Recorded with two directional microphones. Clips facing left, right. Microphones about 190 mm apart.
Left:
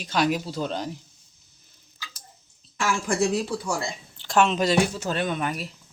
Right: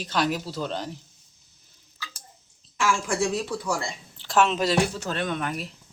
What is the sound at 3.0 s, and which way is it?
Speech, 35° left (ahead or behind).